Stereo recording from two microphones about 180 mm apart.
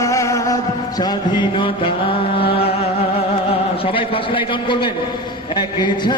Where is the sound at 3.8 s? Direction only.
30° left (ahead or behind).